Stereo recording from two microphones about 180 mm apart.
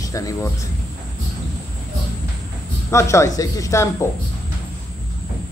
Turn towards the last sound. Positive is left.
turn(degrees=15)  # may be behind; listen again after turning